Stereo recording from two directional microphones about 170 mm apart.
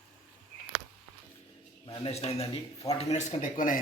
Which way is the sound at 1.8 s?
35° left (ahead or behind).